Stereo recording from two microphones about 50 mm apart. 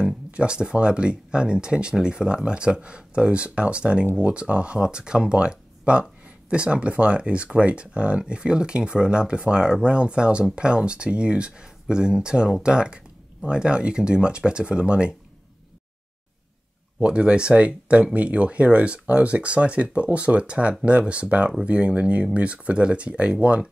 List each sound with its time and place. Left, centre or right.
0.3 s speech: centre
17.0 s speech: right